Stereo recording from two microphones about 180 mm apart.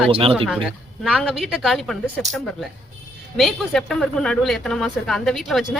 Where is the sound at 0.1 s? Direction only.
30° right (ahead or behind).